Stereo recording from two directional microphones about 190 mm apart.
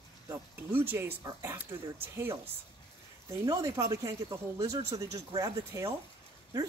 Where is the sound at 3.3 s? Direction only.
15° right (ahead or behind).